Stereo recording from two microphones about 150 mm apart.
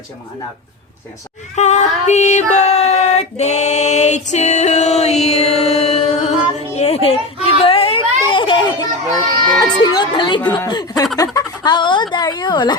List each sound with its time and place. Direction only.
1.5 s child singing: 50° left (ahead or behind)
6.7 s chatter: 45° left (ahead or behind)
9.6 s music: 25° left (ahead or behind)
10.7 s speech: 25° left (ahead or behind)
11.3 s a sound: 30° left (ahead or behind)
12.1 s a woman's voice: 30° left (ahead or behind)